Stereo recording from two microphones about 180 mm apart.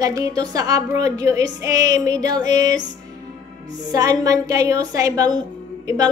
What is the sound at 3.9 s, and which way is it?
Speech, 20° right (ahead or behind).